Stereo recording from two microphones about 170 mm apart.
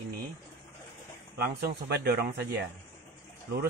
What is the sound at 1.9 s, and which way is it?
Speech, 75° right (ahead or behind).